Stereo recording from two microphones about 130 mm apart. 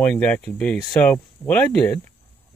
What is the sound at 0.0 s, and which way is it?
A man's voice, 10° left (ahead or behind).